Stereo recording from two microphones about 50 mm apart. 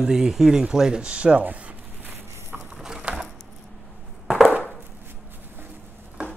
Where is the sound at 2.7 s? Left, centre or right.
Centre.